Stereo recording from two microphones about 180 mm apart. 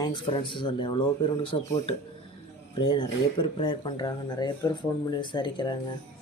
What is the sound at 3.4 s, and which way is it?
Speech, 30° left (ahead or behind).